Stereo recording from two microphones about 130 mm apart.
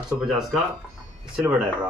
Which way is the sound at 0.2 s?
Centre (ahead or behind).